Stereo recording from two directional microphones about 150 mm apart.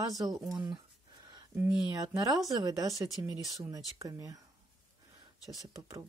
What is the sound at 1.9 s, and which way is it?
Speech, 25° right (ahead or behind).